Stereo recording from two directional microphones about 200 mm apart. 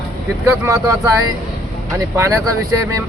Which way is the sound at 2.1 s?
15° right (ahead or behind).